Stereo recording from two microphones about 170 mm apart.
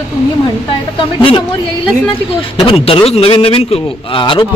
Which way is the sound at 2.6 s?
35° left (ahead or behind).